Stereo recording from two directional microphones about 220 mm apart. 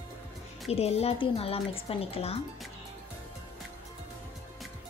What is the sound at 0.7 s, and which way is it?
Speech, 30° left (ahead or behind).